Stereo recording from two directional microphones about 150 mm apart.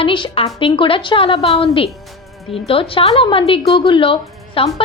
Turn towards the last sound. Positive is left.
turn(degrees=35)  # may be behind; listen again after turning